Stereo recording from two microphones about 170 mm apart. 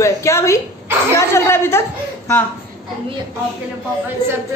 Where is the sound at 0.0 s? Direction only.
15° left (ahead or behind).